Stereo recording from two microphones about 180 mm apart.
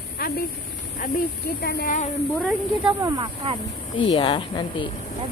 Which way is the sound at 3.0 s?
20° right (ahead or behind).